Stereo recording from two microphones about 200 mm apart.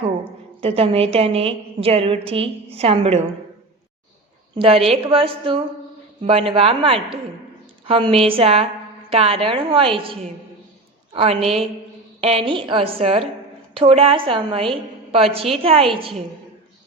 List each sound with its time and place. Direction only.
0.8 s a woman's voice: 30° right (ahead or behind)
4.5 s a woman's voice: 30° right (ahead or behind)